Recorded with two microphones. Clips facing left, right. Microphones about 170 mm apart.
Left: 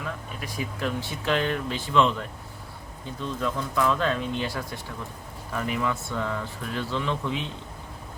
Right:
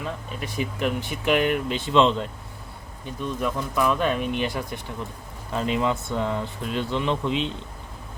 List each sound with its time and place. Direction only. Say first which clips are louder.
0.0 s speech: right 3 dB; 25° right (ahead or behind)